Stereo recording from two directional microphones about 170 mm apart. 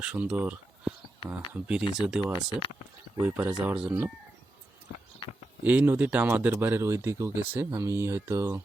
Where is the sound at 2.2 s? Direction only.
25° left (ahead or behind).